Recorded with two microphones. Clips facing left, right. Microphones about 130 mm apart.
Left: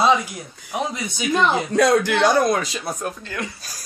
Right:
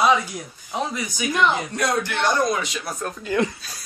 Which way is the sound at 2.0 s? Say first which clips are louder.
Left 6 dB; 90° left.